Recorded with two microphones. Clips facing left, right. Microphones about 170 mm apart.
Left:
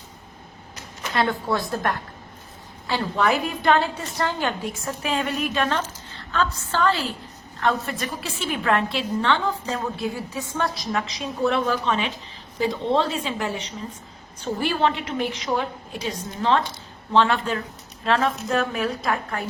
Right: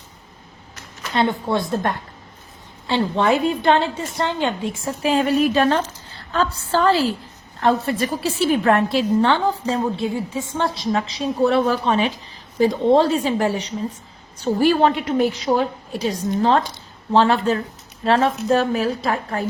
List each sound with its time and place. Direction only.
1.1 s a woman's voice: 25° right (ahead or behind)
4.9 s a woman's voice: 30° right (ahead or behind)